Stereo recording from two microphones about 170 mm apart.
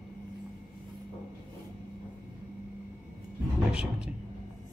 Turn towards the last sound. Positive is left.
turn(degrees=-5)  # may be behind; listen again after turning